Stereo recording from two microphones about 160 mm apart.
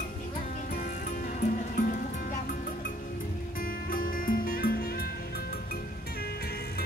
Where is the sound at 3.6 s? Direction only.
60° left (ahead or behind).